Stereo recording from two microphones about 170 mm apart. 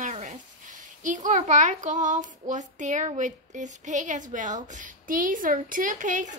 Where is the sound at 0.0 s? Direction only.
45° right (ahead or behind).